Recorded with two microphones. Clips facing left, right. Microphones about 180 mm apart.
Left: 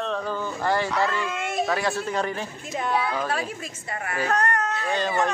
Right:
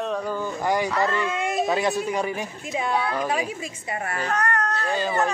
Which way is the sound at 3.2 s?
15° right (ahead or behind).